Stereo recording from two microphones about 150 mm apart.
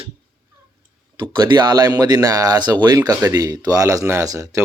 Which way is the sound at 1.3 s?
30° right (ahead or behind).